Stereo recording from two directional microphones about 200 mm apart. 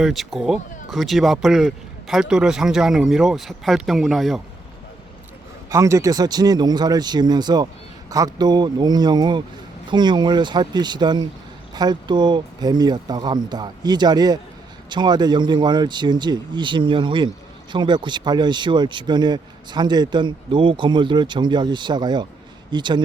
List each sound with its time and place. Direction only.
0.0 s speech: centre (ahead or behind)
5.7 s speech: 15° right (ahead or behind)